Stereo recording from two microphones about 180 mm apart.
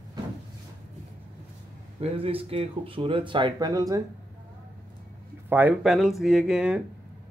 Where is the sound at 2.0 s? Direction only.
30° right (ahead or behind).